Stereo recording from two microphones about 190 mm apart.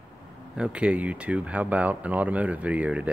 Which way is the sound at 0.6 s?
5° right (ahead or behind).